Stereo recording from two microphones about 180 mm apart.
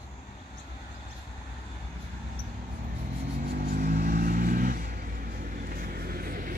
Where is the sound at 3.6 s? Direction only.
60° right (ahead or behind).